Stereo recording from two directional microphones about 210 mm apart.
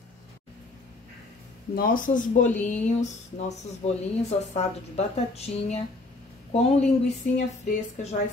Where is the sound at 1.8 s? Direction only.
40° left (ahead or behind).